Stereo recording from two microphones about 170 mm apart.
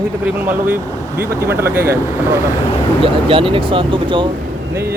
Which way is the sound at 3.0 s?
30° right (ahead or behind).